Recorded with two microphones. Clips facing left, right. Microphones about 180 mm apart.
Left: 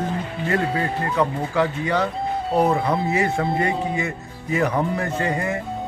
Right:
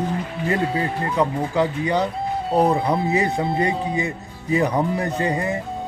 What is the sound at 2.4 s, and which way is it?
Speech, centre (ahead or behind).